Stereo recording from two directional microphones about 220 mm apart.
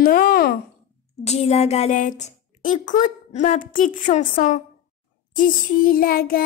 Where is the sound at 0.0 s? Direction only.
40° left (ahead or behind).